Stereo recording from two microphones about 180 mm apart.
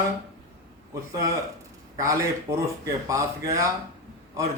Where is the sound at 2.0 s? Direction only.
15° right (ahead or behind).